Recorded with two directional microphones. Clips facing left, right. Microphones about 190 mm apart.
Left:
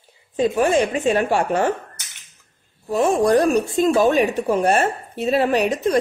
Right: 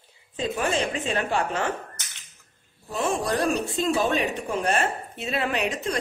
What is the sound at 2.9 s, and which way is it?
A woman's voice, 45° left (ahead or behind).